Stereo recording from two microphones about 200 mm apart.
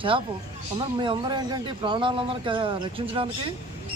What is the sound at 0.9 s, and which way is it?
Speech, 25° right (ahead or behind).